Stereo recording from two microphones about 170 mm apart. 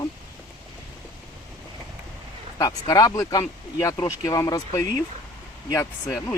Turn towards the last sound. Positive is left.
turn(degrees=10)  # may be behind; listen again after turning